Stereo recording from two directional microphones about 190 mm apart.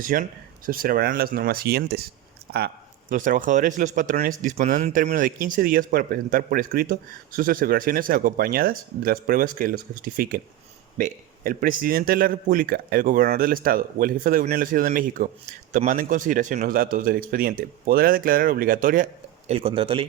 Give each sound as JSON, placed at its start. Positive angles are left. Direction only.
{"t": 0.0, "sound": "speech", "side_deg": -45}
{"t": 19.5, "sound": "speech", "side_deg": -30}